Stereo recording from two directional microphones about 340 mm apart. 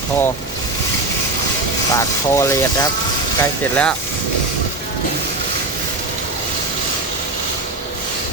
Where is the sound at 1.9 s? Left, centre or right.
Centre.